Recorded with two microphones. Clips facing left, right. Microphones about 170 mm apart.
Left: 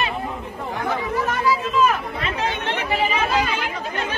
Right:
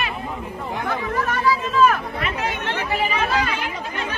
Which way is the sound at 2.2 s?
20° left (ahead or behind).